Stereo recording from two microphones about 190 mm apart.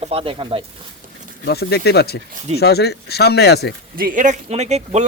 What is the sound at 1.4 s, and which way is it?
Speech, 60° left (ahead or behind).